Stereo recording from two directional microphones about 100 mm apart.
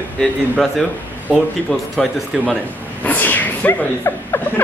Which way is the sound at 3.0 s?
15° left (ahead or behind).